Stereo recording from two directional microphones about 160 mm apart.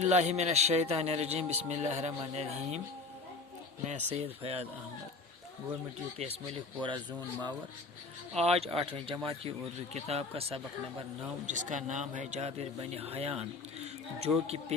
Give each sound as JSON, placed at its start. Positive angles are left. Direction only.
{"t": 0.0, "sound": "speech", "side_deg": -45}
{"t": 3.8, "sound": "a man's voice", "side_deg": -45}
{"t": 6.8, "sound": "speech", "side_deg": -30}
{"t": 8.4, "sound": "a man's voice", "side_deg": -40}
{"t": 11.4, "sound": "a man's voice", "side_deg": -50}
{"t": 14.3, "sound": "speech", "side_deg": -10}